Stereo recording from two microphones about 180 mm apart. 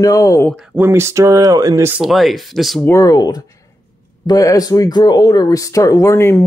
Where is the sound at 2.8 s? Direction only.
20° left (ahead or behind).